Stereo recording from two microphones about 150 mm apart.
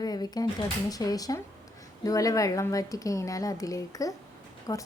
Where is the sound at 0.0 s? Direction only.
25° left (ahead or behind).